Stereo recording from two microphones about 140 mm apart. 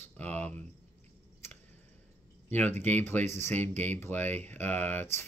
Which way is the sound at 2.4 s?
15° left (ahead or behind).